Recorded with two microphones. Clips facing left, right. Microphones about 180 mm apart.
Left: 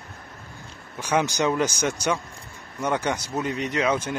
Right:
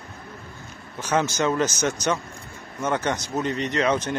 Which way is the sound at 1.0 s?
15° left (ahead or behind).